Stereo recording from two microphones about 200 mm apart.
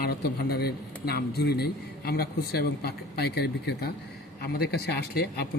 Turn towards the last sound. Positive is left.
turn(degrees=55)  # may be behind; listen again after turning